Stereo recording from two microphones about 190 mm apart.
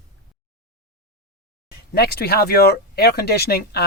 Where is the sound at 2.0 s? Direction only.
55° left (ahead or behind).